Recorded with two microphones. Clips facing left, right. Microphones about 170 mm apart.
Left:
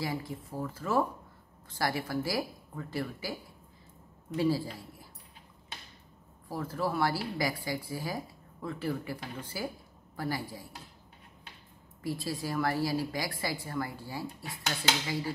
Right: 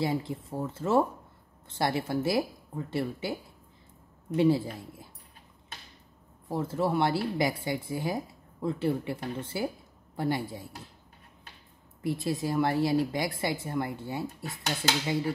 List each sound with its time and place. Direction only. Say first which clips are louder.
0.0 s speech: right 5 dB; 25° right (ahead or behind)
4.4 s speech: right 5 dB; 25° right (ahead or behind)
6.5 s speech: right 5 dB; 25° right (ahead or behind)
12.0 s speech: right 5 dB; 25° right (ahead or behind)